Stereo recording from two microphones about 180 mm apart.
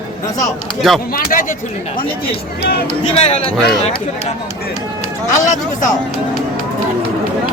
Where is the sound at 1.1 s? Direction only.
50° left (ahead or behind).